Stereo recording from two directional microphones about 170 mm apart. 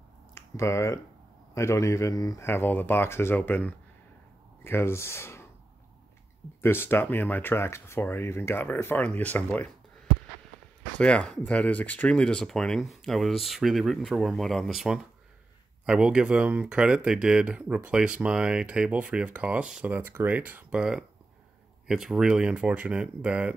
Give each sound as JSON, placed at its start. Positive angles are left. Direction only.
{"t": 0.3, "sound": "speech", "side_deg": 15}
{"t": 6.6, "sound": "speech", "side_deg": 15}
{"t": 11.0, "sound": "speech", "side_deg": 5}